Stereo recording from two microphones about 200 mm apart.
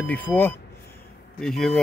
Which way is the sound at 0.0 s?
10° left (ahead or behind).